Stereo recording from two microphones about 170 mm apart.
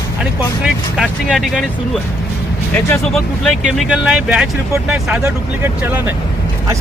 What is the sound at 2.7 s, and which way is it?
Speech, 5° left (ahead or behind).